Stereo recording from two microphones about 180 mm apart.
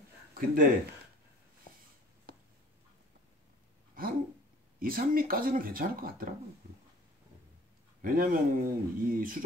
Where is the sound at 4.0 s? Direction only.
50° right (ahead or behind).